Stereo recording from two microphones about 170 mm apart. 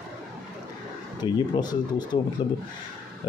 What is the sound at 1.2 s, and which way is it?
Speech, 25° left (ahead or behind).